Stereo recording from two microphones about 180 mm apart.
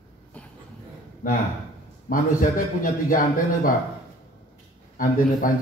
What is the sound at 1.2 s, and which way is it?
A man's voice, 55° left (ahead or behind).